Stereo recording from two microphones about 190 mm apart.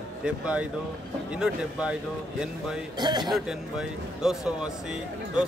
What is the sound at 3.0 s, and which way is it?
Speech, 20° right (ahead or behind).